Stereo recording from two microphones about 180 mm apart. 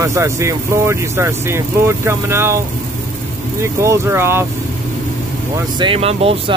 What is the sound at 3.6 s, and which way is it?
Speech, 15° right (ahead or behind).